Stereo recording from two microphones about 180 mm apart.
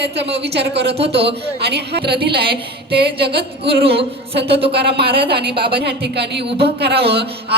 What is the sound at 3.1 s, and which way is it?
Speech, 65° right (ahead or behind).